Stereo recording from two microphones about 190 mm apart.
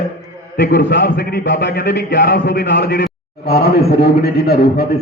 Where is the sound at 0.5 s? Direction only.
60° left (ahead or behind).